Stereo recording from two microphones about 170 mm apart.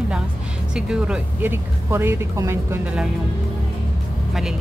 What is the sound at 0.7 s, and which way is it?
Speech, 5° right (ahead or behind).